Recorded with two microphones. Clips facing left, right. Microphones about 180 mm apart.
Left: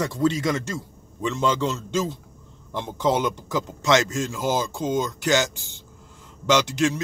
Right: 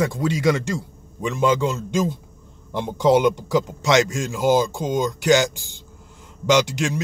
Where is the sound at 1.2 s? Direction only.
10° right (ahead or behind).